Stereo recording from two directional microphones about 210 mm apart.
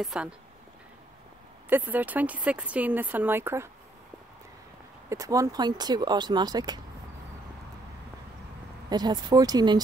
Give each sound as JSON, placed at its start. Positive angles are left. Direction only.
{"t": 0.0, "sound": "speech", "side_deg": -5}
{"t": 1.7, "sound": "speech", "side_deg": -10}
{"t": 5.1, "sound": "speech", "side_deg": -15}
{"t": 8.8, "sound": "speech", "side_deg": -20}